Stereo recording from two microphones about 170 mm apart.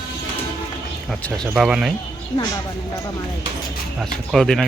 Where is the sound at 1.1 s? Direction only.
5° left (ahead or behind).